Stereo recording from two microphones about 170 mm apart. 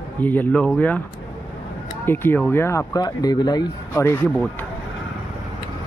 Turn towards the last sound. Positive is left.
turn(degrees=15)  # may be behind; listen again after turning